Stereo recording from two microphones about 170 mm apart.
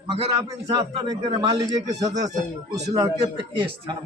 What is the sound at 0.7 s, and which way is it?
A man's voice, 20° right (ahead or behind).